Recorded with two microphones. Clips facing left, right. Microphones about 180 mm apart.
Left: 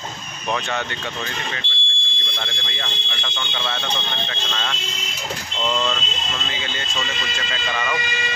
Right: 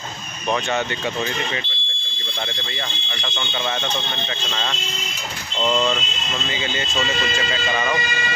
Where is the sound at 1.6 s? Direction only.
85° left.